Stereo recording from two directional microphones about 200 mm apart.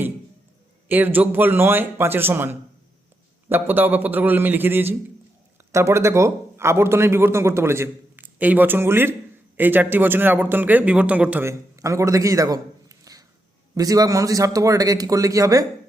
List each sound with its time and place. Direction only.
0.9 s a man's voice: 10° right (ahead or behind)